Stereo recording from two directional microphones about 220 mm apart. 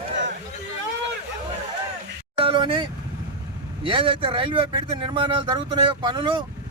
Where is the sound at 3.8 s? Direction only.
25° right (ahead or behind).